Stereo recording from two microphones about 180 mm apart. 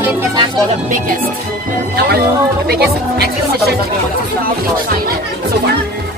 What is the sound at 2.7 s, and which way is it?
Speech, 60° right (ahead or behind).